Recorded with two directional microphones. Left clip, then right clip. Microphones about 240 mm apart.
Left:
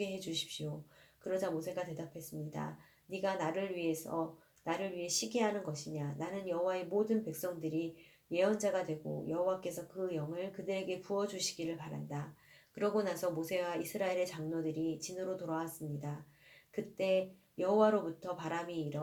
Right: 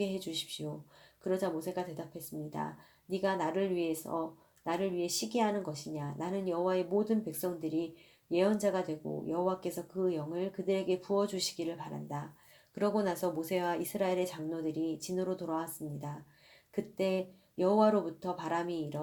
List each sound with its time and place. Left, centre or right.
0.0 s speech: right